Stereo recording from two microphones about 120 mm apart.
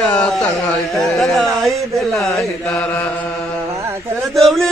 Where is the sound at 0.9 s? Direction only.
Centre (ahead or behind).